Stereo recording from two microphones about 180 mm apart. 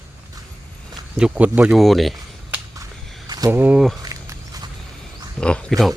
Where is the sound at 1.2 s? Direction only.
5° right (ahead or behind).